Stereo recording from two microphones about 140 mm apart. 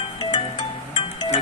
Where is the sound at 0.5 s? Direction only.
35° left (ahead or behind).